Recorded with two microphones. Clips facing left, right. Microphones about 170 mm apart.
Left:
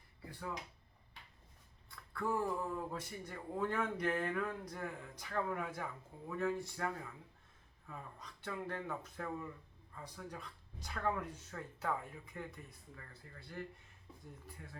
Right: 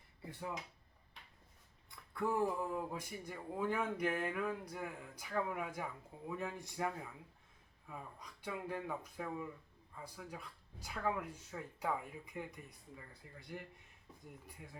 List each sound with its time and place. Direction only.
0.3 s speech: 20° right (ahead or behind)
1.9 s speech: 15° right (ahead or behind)
14.4 s speech: 15° right (ahead or behind)